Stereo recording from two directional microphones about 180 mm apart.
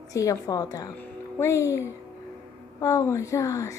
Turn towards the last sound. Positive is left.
turn(degrees=20)  # may be behind; listen again after turning